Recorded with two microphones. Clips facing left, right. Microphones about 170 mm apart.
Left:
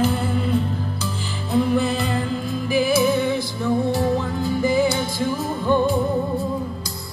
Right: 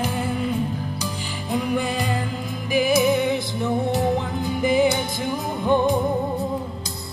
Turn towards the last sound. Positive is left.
turn(degrees=-20)  # may be behind; listen again after turning